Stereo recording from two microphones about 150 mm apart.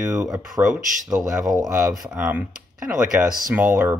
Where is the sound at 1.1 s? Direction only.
25° right (ahead or behind).